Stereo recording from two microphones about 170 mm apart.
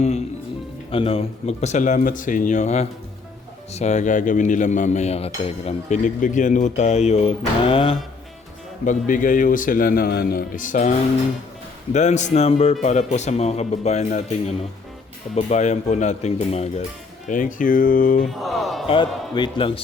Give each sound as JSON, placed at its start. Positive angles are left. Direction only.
{"t": 0.9, "sound": "cutlery", "side_deg": 35}
{"t": 6.1, "sound": "speech", "side_deg": 50}
{"t": 8.8, "sound": "cutlery", "side_deg": 50}
{"t": 11.9, "sound": "speech", "side_deg": 45}
{"t": 15.4, "sound": "cutlery", "side_deg": 45}
{"t": 17.2, "sound": "cutlery", "side_deg": 50}
{"t": 18.3, "sound": "speech", "side_deg": 0}
{"t": 18.9, "sound": "a man's voice", "side_deg": 30}